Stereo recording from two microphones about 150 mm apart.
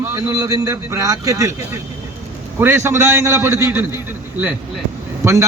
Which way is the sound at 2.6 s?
15° right (ahead or behind).